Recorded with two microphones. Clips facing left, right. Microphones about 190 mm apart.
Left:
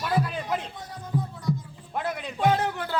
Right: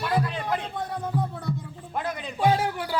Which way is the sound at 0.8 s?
60° right (ahead or behind).